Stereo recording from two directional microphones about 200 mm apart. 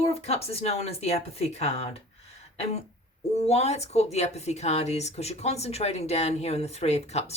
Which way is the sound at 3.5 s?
30° left (ahead or behind).